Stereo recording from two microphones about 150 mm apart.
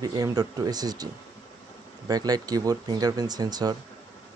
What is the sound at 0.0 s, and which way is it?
Speech, 25° right (ahead or behind).